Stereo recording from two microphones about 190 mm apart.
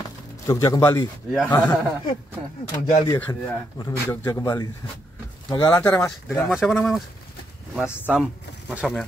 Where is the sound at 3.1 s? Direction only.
10° left (ahead or behind).